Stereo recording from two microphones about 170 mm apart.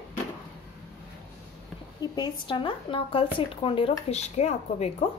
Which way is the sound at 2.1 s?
25° left (ahead or behind).